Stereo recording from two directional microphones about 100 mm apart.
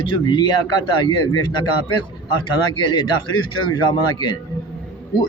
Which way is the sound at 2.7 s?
45° left (ahead or behind).